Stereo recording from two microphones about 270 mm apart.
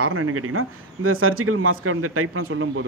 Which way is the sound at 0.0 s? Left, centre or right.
Right.